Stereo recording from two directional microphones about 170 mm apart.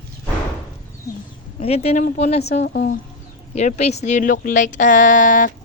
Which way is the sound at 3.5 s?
40° left (ahead or behind).